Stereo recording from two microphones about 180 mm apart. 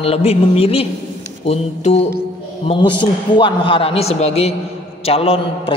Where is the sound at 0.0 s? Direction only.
35° left (ahead or behind).